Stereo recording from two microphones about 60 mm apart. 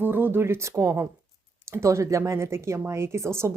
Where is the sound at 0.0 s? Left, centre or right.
Right.